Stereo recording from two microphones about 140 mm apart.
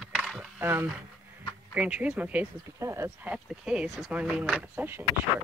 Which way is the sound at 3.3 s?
5° right (ahead or behind).